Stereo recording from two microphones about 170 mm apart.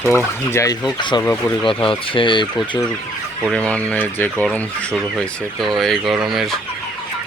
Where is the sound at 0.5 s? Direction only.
20° left (ahead or behind).